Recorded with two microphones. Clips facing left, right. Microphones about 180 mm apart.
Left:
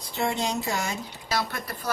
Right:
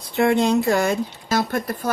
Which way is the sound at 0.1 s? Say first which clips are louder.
Right 10 dB; 60° right (ahead or behind).